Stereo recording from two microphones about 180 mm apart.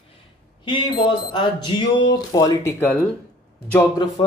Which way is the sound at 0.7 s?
25° left (ahead or behind).